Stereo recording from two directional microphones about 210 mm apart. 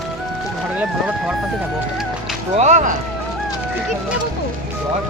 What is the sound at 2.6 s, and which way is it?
Speech, 35° right (ahead or behind).